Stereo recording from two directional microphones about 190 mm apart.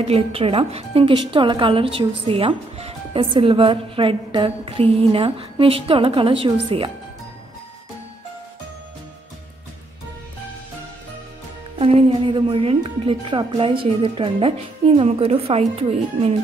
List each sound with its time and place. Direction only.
0.0 s a woman's voice: 30° right (ahead or behind)
11.8 s a woman's voice: 30° right (ahead or behind)